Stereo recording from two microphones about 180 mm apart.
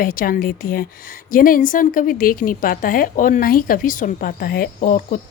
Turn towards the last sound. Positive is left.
turn(degrees=45)  # may be behind; listen again after turning